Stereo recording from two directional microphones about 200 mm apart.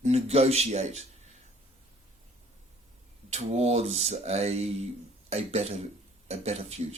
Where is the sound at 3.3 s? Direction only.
30° right (ahead or behind).